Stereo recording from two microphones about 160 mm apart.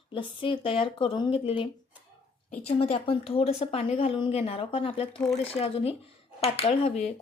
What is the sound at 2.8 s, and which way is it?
Speech, 40° left (ahead or behind).